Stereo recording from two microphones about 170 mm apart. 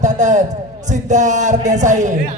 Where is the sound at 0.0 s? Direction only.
45° right (ahead or behind).